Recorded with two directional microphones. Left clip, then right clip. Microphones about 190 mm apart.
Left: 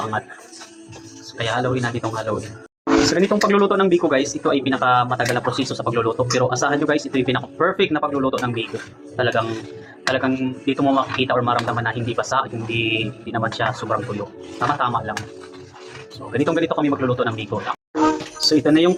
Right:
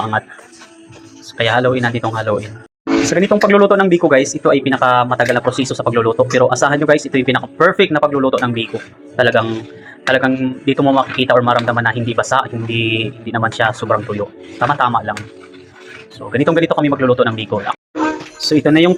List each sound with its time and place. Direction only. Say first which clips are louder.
0.1 s speech: right 7 dB; 30° right (ahead or behind)
1.4 s speech: right 8 dB; 30° right (ahead or behind)
3.1 s speech: right 6 dB; 15° right (ahead or behind)
16.3 s speech: right 6 dB; 25° right (ahead or behind)